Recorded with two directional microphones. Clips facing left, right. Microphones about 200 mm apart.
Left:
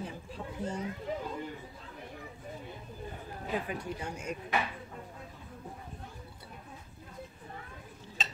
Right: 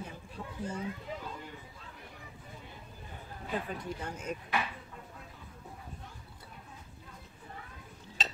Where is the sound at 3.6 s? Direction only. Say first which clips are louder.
Left 1 dB; 10° left (ahead or behind).